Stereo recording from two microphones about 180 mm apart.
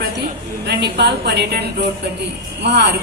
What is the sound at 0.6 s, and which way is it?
A woman's voice, 70° right (ahead or behind).